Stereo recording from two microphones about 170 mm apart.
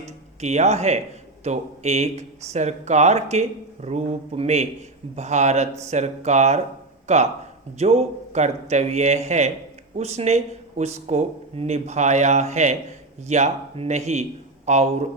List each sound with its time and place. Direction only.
0.0 s a man's voice: 40° right (ahead or behind)